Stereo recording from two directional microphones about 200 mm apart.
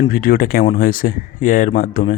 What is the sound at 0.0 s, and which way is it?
Speech, 45° left (ahead or behind).